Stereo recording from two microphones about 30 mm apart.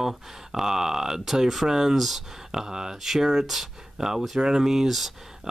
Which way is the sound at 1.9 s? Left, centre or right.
Centre.